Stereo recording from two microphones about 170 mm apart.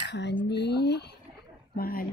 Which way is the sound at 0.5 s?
80° left.